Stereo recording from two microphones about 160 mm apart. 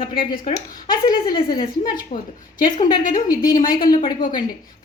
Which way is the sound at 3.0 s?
55° left (ahead or behind).